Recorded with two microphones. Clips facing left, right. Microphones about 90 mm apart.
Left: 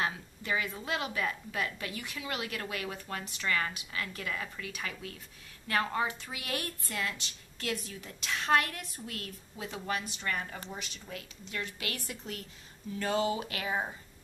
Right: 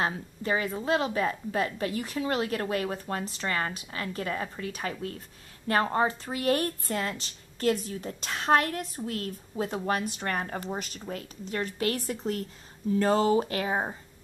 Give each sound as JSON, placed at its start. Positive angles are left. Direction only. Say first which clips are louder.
{"t": 0.0, "sound": "a woman's voice", "louder": "right 5 dB", "side_deg": -35}